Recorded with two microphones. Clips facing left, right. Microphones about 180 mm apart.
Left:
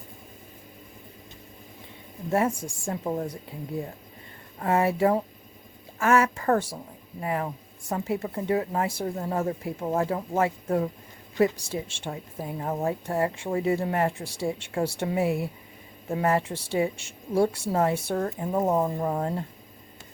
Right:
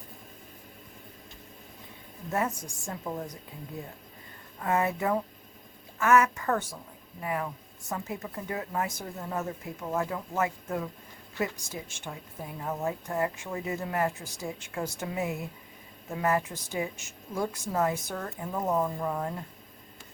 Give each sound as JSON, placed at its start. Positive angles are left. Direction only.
{"t": 2.3, "sound": "speech", "side_deg": 30}
{"t": 4.6, "sound": "a woman's voice", "side_deg": 30}